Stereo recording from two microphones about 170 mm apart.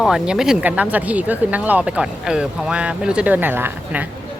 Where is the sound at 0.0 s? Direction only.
5° right (ahead or behind).